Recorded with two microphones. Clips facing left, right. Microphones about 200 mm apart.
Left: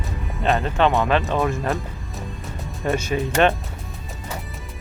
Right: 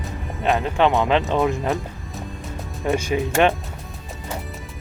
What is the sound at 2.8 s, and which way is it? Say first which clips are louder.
Speech: right 1 dB; 15° right (ahead or behind).